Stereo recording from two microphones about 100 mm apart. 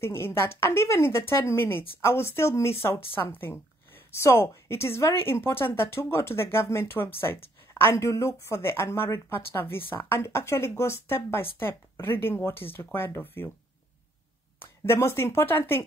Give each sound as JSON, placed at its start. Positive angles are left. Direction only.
{"t": 0.0, "sound": "a woman's voice", "side_deg": 25}
{"t": 14.6, "sound": "a woman's voice", "side_deg": 25}